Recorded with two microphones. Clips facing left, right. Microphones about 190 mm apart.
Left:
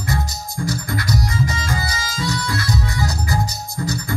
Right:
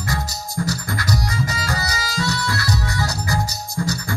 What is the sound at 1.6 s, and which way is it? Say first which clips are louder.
Music: even; 20° left (ahead or behind).